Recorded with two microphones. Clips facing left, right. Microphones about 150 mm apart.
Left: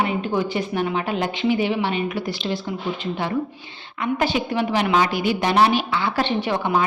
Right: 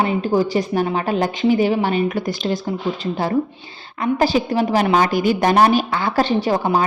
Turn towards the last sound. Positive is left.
turn(degrees=-40)  # may be behind; listen again after turning